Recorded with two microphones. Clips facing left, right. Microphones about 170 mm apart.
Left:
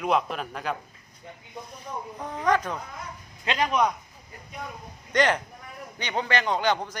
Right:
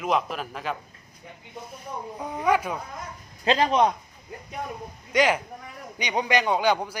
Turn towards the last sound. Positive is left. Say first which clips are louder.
# right 2 dB
turn(degrees=-10)  # may be behind; listen again after turning